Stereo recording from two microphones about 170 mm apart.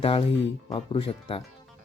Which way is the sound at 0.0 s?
35° left (ahead or behind).